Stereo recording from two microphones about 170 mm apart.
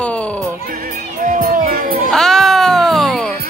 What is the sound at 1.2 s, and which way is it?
Music, 50° right (ahead or behind).